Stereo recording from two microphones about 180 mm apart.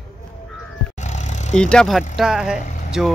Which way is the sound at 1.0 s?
40° left (ahead or behind).